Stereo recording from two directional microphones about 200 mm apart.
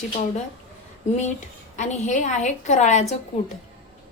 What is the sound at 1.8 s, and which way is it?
Speech, 35° left (ahead or behind).